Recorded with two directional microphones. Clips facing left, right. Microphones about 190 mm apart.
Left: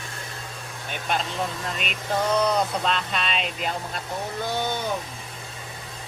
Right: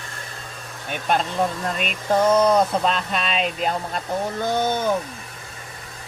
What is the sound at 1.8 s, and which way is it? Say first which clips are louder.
Speech: right 7 dB; 45° right (ahead or behind).